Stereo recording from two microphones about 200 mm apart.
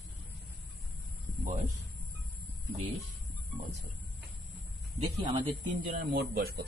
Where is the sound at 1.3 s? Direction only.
45° right (ahead or behind).